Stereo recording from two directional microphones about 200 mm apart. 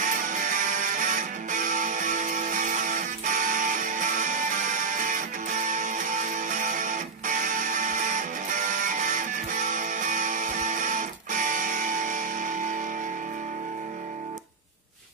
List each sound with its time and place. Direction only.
0.0 s music: 40° right (ahead or behind)